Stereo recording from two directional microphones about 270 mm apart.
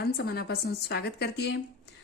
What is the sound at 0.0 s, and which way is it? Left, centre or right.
Speech, left.